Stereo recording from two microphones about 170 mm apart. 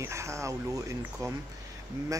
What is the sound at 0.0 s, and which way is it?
Speech, 15° right (ahead or behind).